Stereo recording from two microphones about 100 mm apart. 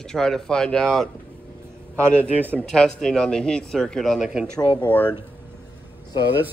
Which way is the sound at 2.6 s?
5° left (ahead or behind).